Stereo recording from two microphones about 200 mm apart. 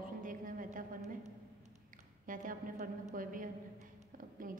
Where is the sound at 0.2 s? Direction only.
40° right (ahead or behind).